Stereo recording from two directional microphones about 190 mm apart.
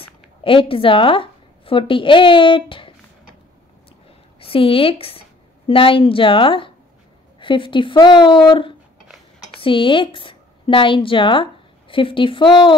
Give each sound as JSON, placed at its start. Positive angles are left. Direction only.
{"t": 0.4, "sound": "a woman's voice", "side_deg": 30}
{"t": 4.4, "sound": "a woman's voice", "side_deg": 30}